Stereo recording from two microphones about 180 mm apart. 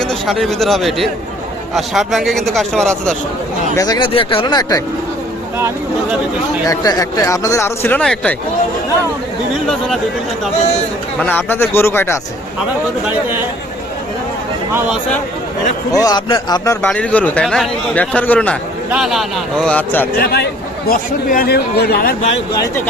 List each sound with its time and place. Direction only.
0.0 s speech: centre (ahead or behind)
3.8 s speech: 20° left (ahead or behind)
5.5 s speech: 15° right (ahead or behind)
6.7 s speech: 20° left (ahead or behind)
11.2 s speech: 10° left (ahead or behind)
14.7 s speech: 10° right (ahead or behind)
15.9 s speech: 20° left (ahead or behind)
16.8 s speech: 5° left (ahead or behind)
18.9 s speech: centre (ahead or behind)
20.1 s speech: 60° left (ahead or behind)
22.5 s speech: 20° left (ahead or behind)